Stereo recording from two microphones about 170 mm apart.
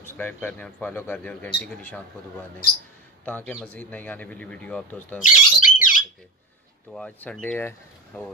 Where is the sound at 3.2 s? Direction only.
10° left (ahead or behind).